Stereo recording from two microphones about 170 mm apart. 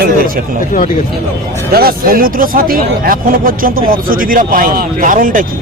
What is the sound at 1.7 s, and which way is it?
Speech, 60° right (ahead or behind).